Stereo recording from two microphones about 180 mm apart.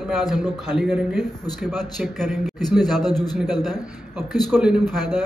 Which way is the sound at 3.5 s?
Centre (ahead or behind).